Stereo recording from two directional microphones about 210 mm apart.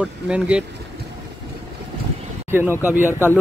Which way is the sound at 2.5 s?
10° right (ahead or behind).